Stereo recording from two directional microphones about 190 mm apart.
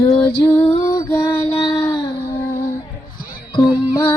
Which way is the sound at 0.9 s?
15° left (ahead or behind).